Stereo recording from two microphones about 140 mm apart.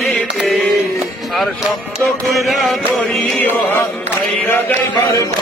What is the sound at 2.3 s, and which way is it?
Chant, centre (ahead or behind).